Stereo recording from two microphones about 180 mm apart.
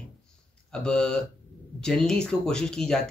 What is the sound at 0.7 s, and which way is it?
Speech, 5° left (ahead or behind).